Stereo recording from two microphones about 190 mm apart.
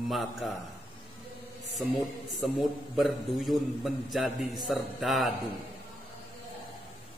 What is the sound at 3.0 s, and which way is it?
A man's voice, centre (ahead or behind).